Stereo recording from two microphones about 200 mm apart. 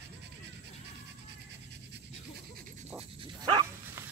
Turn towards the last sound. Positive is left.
turn(degrees=-25)  # may be behind; listen again after turning